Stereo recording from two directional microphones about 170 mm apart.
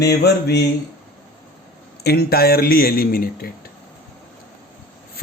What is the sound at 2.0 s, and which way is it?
Speech, 65° left (ahead or behind).